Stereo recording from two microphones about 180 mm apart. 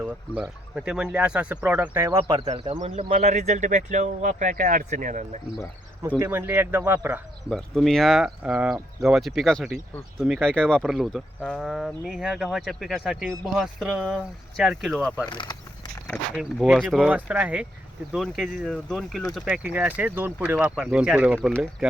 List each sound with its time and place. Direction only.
0.8 s speech: 5° right (ahead or behind)
2.4 s speech: 35° right (ahead or behind)
3.1 s speech: 40° right (ahead or behind)
6.1 s speech: 10° right (ahead or behind)
7.5 s speech: centre (ahead or behind)
15.3 s speech: 25° left (ahead or behind)
16.3 s speech: centre (ahead or behind)